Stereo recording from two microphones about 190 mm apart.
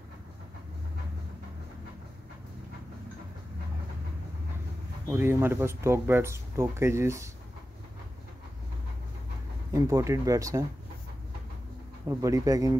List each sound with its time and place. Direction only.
5.1 s speech: 10° right (ahead or behind)
9.7 s speech: 15° right (ahead or behind)
12.1 s speech: 15° right (ahead or behind)